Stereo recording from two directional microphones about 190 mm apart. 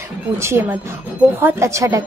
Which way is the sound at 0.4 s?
15° right (ahead or behind).